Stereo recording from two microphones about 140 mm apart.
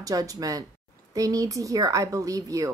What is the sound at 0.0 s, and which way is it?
Speech, 25° right (ahead or behind).